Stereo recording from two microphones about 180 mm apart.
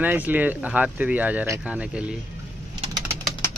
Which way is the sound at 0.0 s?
10° right (ahead or behind).